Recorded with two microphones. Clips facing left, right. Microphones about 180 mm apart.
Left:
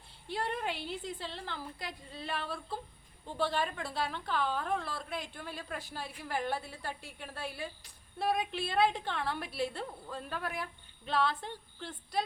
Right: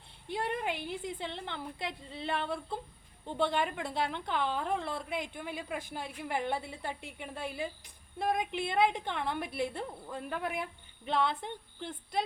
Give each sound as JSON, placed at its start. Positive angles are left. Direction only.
{"t": 0.3, "sound": "a woman's voice", "side_deg": -15}